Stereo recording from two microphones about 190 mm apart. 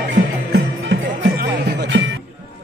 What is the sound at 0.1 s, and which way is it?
Music, 55° right (ahead or behind).